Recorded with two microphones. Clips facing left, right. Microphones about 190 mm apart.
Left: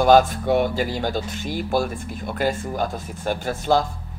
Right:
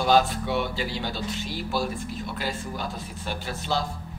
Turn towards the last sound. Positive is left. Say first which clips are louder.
# left 8 dB
turn(degrees=50)  # may be behind; listen again after turning